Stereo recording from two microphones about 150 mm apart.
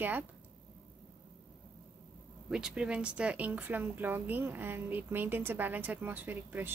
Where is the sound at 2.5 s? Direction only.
5° right (ahead or behind).